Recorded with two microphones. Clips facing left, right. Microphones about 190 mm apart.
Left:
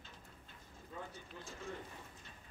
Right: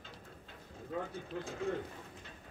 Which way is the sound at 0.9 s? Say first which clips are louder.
Right 10 dB; 65° right (ahead or behind).